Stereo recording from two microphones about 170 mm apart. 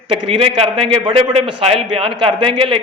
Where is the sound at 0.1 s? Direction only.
35° right (ahead or behind).